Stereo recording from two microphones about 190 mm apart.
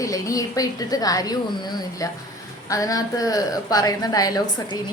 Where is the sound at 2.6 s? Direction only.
20° left (ahead or behind).